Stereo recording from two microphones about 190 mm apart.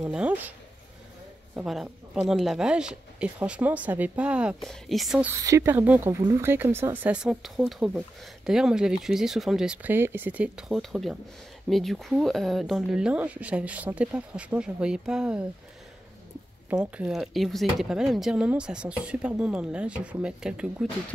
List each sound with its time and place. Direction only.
0.0 s speech: 5° right (ahead or behind)
1.5 s speech: centre (ahead or behind)
5.3 s speech: 15° right (ahead or behind)
16.7 s speech: 5° right (ahead or behind)